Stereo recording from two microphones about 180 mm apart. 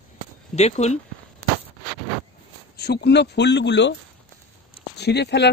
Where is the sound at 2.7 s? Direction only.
65° left (ahead or behind).